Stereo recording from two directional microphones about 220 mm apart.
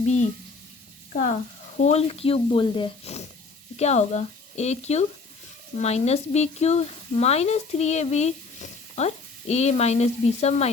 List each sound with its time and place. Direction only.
0.0 s frying: 30° left (ahead or behind)
1.1 s speech: 30° left (ahead or behind)